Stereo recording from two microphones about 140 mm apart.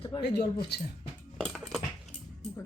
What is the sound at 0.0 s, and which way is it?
Speech, 35° left (ahead or behind).